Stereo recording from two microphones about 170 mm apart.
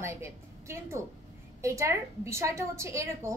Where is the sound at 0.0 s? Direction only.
15° right (ahead or behind).